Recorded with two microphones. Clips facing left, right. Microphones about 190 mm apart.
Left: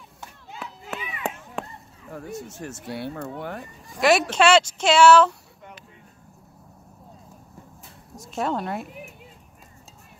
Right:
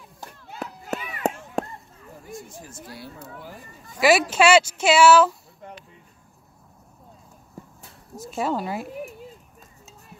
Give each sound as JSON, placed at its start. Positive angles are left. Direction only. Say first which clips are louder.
{"t": 0.2, "sound": "a sound", "louder": "right 3 dB", "side_deg": -40}
{"t": 2.0, "sound": "speech", "louder": "left 5 dB", "side_deg": 70}
{"t": 4.0, "sound": "speech", "louder": "right 1 dB", "side_deg": -5}
{"t": 8.2, "sound": "speech", "louder": "right 1 dB", "side_deg": -5}